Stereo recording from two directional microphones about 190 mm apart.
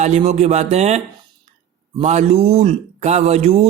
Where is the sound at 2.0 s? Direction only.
35° right (ahead or behind).